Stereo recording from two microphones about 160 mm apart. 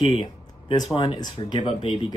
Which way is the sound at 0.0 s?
30° left (ahead or behind).